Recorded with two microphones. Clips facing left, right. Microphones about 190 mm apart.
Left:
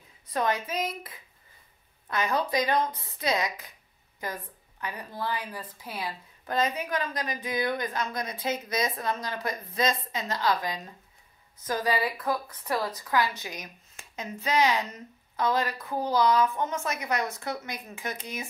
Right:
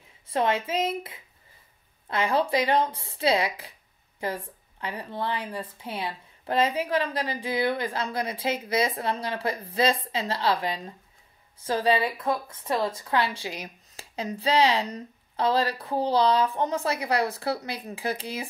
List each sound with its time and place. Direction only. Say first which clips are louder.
0.3 s a woman's voice: right 3 dB; 25° right (ahead or behind)